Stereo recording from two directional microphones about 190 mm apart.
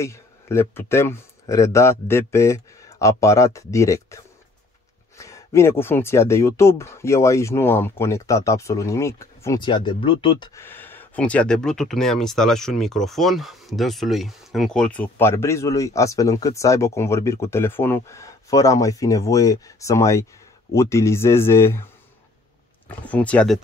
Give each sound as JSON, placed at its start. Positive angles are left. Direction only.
{"t": 0.0, "sound": "speech", "side_deg": 15}
{"t": 10.5, "sound": "speech", "side_deg": 10}
{"t": 22.8, "sound": "speech", "side_deg": 5}